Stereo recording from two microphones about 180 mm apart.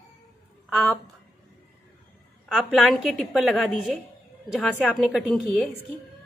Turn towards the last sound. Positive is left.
turn(degrees=-5)  # may be behind; listen again after turning